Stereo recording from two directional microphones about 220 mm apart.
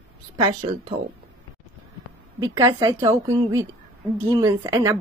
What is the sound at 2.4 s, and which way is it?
Speech, 15° right (ahead or behind).